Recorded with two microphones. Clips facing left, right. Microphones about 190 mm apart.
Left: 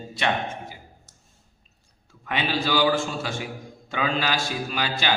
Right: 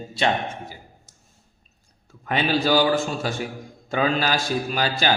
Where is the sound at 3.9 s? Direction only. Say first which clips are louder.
Right 4 dB; 40° right (ahead or behind).